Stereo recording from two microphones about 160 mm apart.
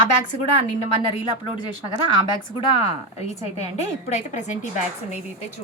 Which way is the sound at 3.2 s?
45° left (ahead or behind).